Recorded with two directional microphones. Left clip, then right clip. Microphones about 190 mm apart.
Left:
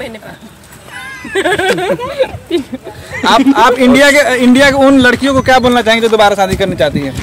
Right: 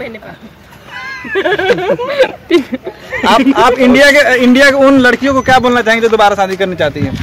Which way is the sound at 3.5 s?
5° left (ahead or behind).